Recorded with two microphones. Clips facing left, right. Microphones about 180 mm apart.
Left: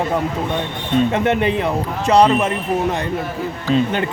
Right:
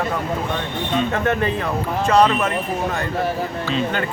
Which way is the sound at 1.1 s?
20° left (ahead or behind).